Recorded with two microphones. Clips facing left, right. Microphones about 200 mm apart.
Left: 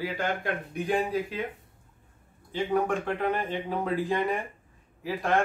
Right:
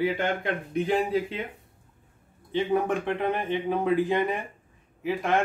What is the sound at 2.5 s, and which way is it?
A man's voice, 20° right (ahead or behind).